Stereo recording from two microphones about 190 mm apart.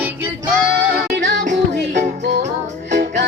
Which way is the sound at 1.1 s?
70° right (ahead or behind).